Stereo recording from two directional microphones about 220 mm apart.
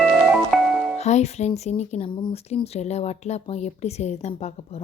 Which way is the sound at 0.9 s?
30° left (ahead or behind).